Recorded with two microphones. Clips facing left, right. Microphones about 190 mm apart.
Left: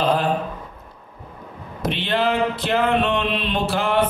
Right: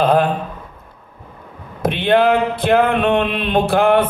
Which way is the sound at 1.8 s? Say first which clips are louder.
Right 8 dB; 55° right (ahead or behind).